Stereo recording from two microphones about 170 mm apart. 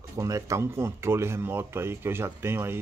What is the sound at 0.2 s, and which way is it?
Speech, 20° right (ahead or behind).